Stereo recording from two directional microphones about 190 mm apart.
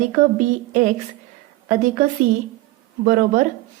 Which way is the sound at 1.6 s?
40° right (ahead or behind).